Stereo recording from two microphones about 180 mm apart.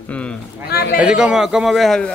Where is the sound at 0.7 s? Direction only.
60° left (ahead or behind).